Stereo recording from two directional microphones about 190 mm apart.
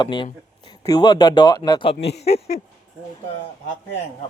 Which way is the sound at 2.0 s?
60° left (ahead or behind).